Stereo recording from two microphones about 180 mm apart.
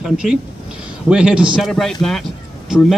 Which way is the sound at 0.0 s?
5° right (ahead or behind).